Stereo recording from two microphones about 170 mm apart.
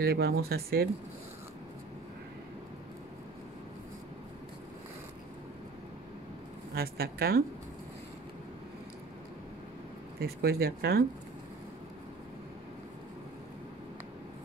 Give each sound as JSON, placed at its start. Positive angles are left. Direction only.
{"t": 0.0, "sound": "speech", "side_deg": -65}
{"t": 6.7, "sound": "speech", "side_deg": -65}
{"t": 10.2, "sound": "speech", "side_deg": -65}